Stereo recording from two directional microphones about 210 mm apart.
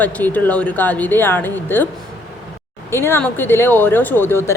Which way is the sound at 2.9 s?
10° left (ahead or behind).